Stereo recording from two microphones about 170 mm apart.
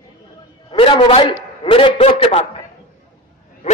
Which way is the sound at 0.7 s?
30° left (ahead or behind).